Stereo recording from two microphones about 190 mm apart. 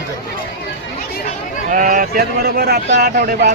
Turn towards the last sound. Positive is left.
turn(degrees=-50)  # may be behind; listen again after turning